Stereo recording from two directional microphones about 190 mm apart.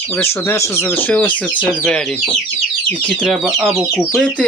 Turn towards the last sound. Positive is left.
turn(degrees=0)  # may be behind; listen again after turning